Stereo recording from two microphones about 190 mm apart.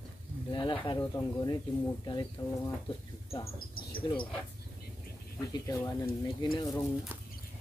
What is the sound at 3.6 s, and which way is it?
Speech, 50° left (ahead or behind).